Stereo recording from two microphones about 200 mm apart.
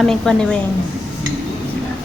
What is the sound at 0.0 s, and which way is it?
Speech, centre (ahead or behind).